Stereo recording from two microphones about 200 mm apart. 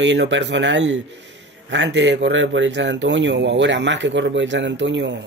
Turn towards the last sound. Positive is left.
turn(degrees=-65)  # may be behind; listen again after turning